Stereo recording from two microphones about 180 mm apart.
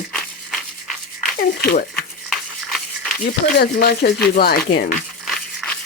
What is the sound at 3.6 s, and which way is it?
Speech, 60° left (ahead or behind).